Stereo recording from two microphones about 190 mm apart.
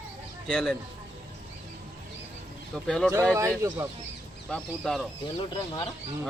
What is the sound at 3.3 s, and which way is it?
Speech, 15° right (ahead or behind).